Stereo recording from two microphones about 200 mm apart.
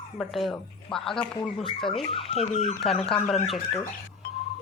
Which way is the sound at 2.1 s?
30° left (ahead or behind).